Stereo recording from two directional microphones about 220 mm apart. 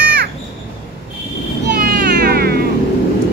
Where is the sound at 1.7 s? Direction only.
45° right (ahead or behind).